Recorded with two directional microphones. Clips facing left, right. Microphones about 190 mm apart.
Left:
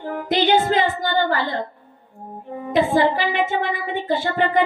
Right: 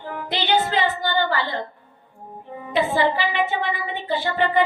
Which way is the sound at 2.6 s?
45° left (ahead or behind).